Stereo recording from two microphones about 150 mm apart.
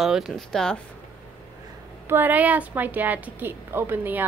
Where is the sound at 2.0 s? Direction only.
15° right (ahead or behind).